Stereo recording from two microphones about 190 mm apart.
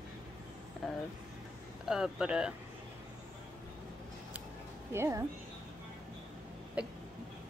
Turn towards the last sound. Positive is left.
turn(degrees=-5)  # may be behind; listen again after turning